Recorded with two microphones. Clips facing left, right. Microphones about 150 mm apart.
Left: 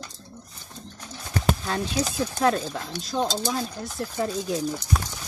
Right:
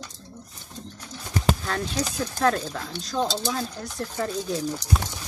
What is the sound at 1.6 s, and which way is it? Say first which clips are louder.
Speech: left 1 dB; 15° left (ahead or behind).